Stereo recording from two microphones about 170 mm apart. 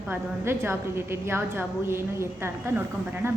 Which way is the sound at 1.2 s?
15° right (ahead or behind).